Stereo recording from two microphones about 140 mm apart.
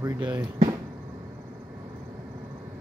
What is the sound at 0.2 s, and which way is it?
Speech, 15° right (ahead or behind).